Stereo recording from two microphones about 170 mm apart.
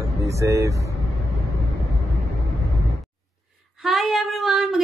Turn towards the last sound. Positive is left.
turn(degrees=0)  # may be behind; listen again after turning